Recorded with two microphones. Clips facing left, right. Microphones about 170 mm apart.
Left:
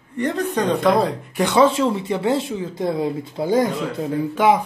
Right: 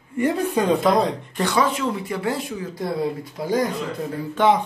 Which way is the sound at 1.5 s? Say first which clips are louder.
Left 6 dB; 30° left (ahead or behind).